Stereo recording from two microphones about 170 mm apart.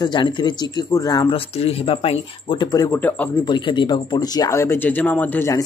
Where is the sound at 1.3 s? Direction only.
35° left (ahead or behind).